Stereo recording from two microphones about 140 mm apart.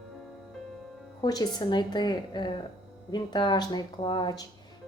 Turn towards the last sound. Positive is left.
turn(degrees=30)  # may be behind; listen again after turning